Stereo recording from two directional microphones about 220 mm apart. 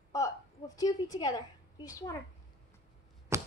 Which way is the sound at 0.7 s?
15° left (ahead or behind).